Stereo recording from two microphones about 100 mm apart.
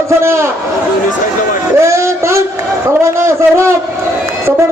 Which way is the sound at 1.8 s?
30° right (ahead or behind).